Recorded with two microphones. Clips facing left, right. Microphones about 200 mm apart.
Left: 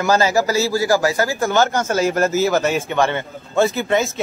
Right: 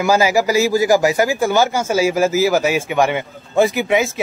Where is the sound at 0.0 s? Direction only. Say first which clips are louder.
Right 2 dB; 10° right (ahead or behind).